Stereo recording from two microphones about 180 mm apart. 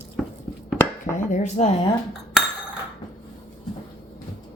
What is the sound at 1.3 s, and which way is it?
Speech, 40° left (ahead or behind).